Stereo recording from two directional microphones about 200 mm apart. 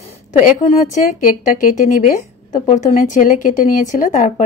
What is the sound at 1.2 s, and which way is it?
Speech, 40° left (ahead or behind).